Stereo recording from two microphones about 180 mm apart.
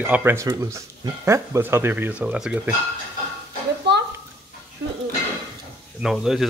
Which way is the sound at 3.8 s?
65° right (ahead or behind).